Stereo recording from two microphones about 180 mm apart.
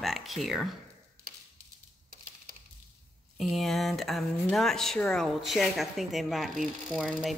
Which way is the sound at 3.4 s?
Centre (ahead or behind).